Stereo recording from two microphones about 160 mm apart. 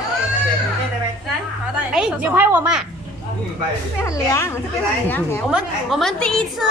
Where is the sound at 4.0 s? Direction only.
20° left (ahead or behind).